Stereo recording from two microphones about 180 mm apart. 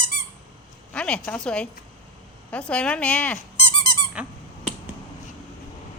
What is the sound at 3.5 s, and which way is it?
Squeak, 30° left (ahead or behind).